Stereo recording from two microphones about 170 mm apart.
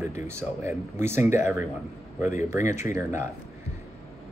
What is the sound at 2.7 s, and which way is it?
Speech, 15° right (ahead or behind).